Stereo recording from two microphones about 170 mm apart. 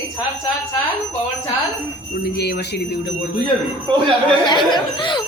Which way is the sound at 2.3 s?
70° left (ahead or behind).